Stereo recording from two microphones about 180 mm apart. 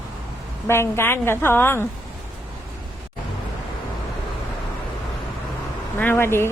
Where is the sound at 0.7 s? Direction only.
15° left (ahead or behind).